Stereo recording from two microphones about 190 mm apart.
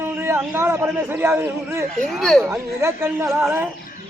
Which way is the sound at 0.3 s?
10° right (ahead or behind).